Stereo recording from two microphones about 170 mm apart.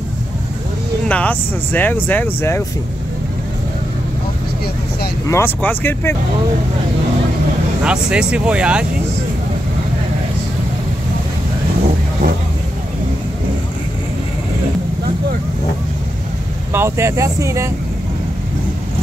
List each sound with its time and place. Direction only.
1.0 s speech: 5° left (ahead or behind)
5.3 s speech: 10° left (ahead or behind)
7.8 s speech: 5° right (ahead or behind)
16.7 s speech: 15° right (ahead or behind)